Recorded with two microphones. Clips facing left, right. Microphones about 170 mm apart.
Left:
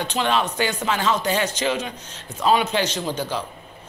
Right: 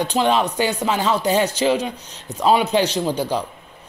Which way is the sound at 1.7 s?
35° right (ahead or behind).